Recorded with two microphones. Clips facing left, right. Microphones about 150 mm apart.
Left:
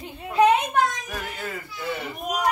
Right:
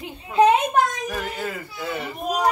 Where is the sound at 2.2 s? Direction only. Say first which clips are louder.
Right 3 dB; 30° right (ahead or behind).